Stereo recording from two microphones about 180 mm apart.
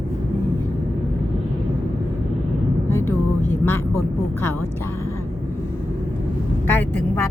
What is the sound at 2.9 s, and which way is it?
Vehicle, 15° left (ahead or behind).